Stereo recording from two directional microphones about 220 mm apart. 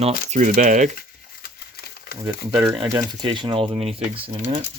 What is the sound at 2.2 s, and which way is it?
Speech, 5° right (ahead or behind).